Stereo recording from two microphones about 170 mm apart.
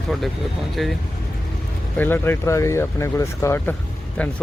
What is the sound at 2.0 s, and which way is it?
Speech, 15° left (ahead or behind).